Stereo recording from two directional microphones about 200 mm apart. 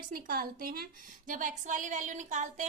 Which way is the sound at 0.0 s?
45° right (ahead or behind).